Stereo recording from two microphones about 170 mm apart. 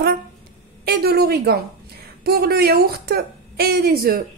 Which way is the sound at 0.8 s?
70° right (ahead or behind).